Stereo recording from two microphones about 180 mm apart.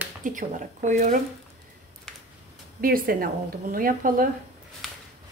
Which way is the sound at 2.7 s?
55° right (ahead or behind).